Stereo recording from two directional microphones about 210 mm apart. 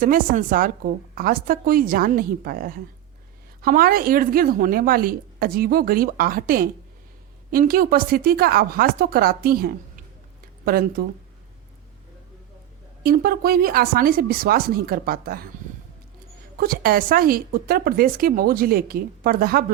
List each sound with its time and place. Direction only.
0.0 s speech: 40° right (ahead or behind)
13.0 s speech: 45° right (ahead or behind)
16.6 s speech: 45° right (ahead or behind)